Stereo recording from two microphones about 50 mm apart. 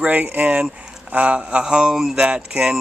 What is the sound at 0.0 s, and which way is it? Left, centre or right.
Speech, right.